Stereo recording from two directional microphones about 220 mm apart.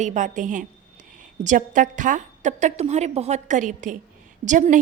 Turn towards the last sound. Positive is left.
turn(degrees=-35)  # may be behind; listen again after turning